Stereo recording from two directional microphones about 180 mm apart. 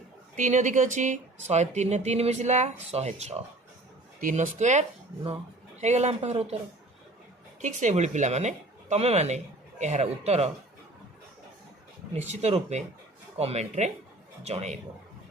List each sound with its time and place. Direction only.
0.3 s speech: 45° right (ahead or behind)
7.6 s speech: 40° right (ahead or behind)
12.1 s speech: 40° right (ahead or behind)